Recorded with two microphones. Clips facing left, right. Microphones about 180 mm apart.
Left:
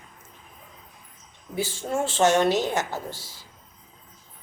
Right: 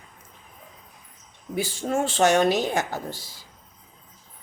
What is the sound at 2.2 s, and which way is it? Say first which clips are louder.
Speech: even; 15° right (ahead or behind).